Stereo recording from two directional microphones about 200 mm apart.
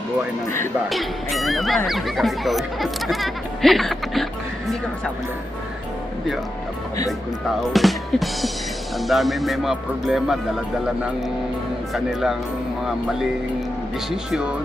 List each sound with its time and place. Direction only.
0.9 s speech: centre (ahead or behind)
7.7 s speech: centre (ahead or behind)
11.9 s speech: centre (ahead or behind)